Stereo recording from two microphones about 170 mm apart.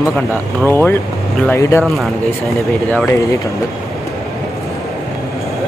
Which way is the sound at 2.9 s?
15° left (ahead or behind).